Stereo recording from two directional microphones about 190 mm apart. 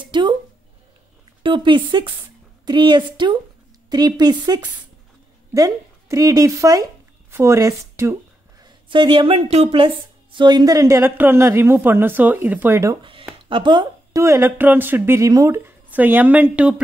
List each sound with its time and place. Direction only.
0.0 s a sound: 25° right (ahead or behind)
1.4 s a woman's voice: 25° right (ahead or behind)
8.6 s a woman's voice: 25° right (ahead or behind)
13.5 s a woman's voice: 25° right (ahead or behind); by 16.8 s 5° right (ahead or behind)